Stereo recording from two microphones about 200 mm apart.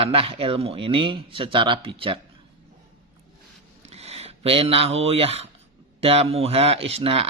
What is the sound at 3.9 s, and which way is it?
Speech, 30° right (ahead or behind).